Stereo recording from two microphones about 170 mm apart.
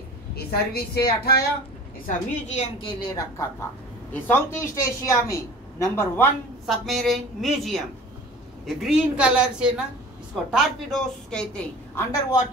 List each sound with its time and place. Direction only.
0.4 s a woman's voice: 65° left (ahead or behind)
2.0 s a woman's voice: 40° left (ahead or behind)
3.0 s a woman's voice: 20° left (ahead or behind)
6.6 s a woman's voice: centre (ahead or behind); by 12.4 s 15° left (ahead or behind)